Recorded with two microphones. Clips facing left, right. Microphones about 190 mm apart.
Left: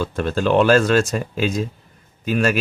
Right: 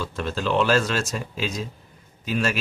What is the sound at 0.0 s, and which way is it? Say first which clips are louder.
Speech: left 6 dB; 55° left (ahead or behind).